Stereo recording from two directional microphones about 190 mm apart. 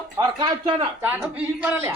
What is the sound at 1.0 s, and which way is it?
Speech, 10° right (ahead or behind).